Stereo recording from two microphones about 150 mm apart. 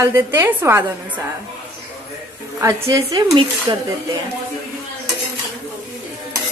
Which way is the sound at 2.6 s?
20° right (ahead or behind).